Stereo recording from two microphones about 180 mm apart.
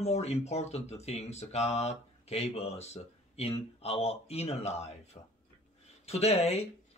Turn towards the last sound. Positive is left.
turn(degrees=35)  # may be behind; listen again after turning